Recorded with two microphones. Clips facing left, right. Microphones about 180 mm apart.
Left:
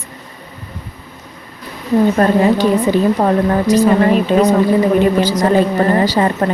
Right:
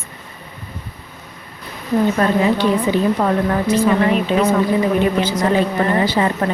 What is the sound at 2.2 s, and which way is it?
A woman's voice, 40° left (ahead or behind).